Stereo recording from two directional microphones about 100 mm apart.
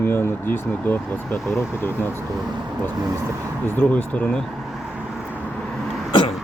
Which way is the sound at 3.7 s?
20° left (ahead or behind).